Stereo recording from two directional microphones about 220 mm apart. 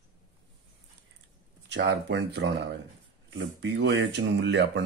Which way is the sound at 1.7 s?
50° right (ahead or behind).